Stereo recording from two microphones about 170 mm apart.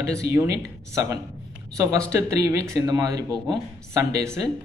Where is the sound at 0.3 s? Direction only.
15° right (ahead or behind).